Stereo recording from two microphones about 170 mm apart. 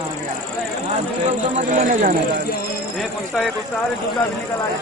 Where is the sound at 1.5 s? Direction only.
45° right (ahead or behind).